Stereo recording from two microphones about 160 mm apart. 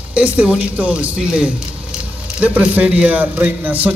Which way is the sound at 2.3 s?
10° right (ahead or behind).